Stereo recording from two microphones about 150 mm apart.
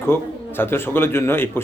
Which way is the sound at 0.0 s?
15° left (ahead or behind).